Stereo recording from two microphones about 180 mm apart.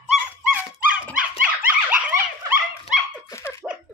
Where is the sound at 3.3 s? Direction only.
15° left (ahead or behind).